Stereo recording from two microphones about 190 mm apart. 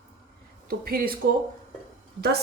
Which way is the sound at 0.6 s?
50° right (ahead or behind).